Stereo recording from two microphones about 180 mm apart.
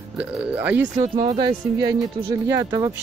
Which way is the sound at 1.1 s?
25° right (ahead or behind).